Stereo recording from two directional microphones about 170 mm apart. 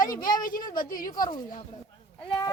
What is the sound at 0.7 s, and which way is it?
Speech, 55° left (ahead or behind).